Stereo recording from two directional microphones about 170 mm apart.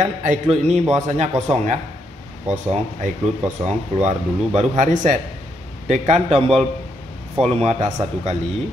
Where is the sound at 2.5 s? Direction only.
45° right (ahead or behind).